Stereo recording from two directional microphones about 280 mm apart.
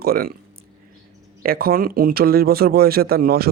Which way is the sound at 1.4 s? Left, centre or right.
Right.